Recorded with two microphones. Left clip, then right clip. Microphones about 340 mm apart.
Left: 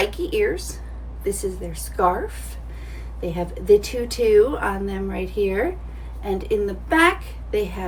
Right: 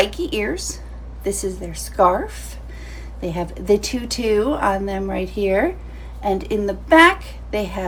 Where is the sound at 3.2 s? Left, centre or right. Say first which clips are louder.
Right 2 dB; centre.